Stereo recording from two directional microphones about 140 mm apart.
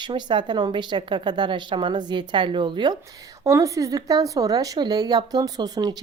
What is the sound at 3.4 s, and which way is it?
Speech, 25° right (ahead or behind).